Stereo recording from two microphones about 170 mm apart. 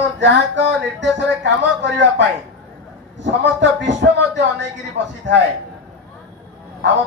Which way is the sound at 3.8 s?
90° right.